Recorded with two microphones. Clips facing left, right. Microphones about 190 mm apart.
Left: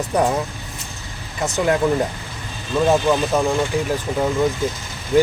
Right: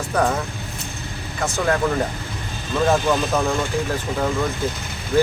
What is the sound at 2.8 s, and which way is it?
Speech, 10° left (ahead or behind).